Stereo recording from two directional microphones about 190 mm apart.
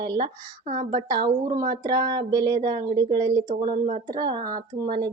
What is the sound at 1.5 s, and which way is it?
Speech, 45° right (ahead or behind).